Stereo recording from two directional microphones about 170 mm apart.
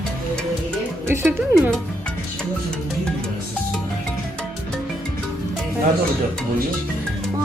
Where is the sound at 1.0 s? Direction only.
15° right (ahead or behind).